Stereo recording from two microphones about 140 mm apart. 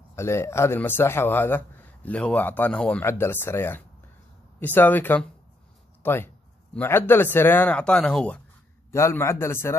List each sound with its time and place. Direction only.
0.1 s speech: 20° left (ahead or behind)
8.9 s a man's voice: 20° left (ahead or behind)